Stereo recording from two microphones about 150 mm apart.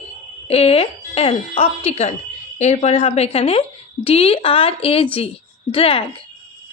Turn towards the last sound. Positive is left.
turn(degrees=40)  # may be behind; listen again after turning